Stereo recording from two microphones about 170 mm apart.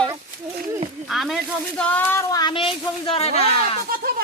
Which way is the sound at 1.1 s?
Centre (ahead or behind).